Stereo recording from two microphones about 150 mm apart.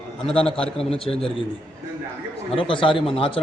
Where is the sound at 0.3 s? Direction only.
40° left (ahead or behind).